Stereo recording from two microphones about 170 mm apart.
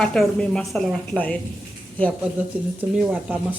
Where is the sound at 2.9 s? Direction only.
5° right (ahead or behind).